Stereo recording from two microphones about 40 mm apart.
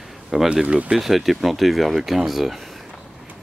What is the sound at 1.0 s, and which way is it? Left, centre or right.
Speech, centre.